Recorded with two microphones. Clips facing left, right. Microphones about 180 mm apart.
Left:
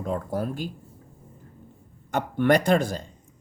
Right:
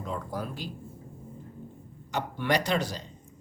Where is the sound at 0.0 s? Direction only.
50° left (ahead or behind).